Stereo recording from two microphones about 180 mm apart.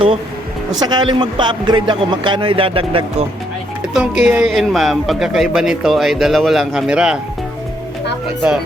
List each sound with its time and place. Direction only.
0.8 s speech: 25° right (ahead or behind)
4.3 s a man's voice: 5° right (ahead or behind)